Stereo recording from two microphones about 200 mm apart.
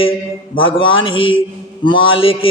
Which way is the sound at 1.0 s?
25° left (ahead or behind).